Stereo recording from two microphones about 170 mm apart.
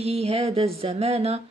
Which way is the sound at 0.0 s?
35° right (ahead or behind).